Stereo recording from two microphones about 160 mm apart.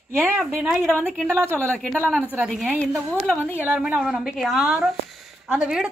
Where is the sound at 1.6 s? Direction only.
5° left (ahead or behind).